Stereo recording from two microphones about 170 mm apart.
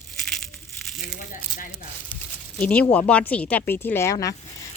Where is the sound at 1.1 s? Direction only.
50° left (ahead or behind).